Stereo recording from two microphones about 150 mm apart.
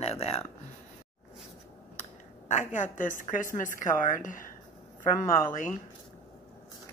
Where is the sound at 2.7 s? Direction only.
60° left (ahead or behind).